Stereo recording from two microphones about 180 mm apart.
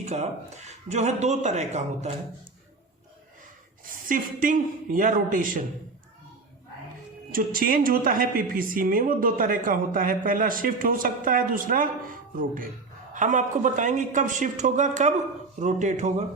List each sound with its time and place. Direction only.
0.0 s a man's voice: 40° right (ahead or behind)
3.8 s a woman's voice: 50° right (ahead or behind)
7.3 s a woman's voice: 50° right (ahead or behind)
13.1 s a woman's voice: 45° right (ahead or behind)